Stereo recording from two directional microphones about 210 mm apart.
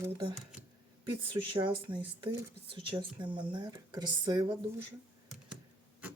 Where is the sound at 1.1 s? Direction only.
25° right (ahead or behind).